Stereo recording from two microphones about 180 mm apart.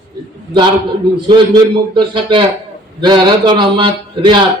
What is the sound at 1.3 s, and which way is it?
A man's voice, 25° right (ahead or behind).